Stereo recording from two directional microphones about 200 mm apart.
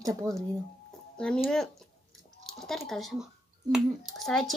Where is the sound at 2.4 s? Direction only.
Centre (ahead or behind).